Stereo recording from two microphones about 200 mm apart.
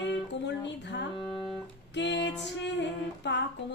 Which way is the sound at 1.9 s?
60° left (ahead or behind).